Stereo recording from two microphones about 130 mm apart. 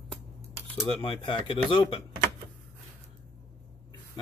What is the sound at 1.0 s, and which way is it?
Speech, 40° left (ahead or behind).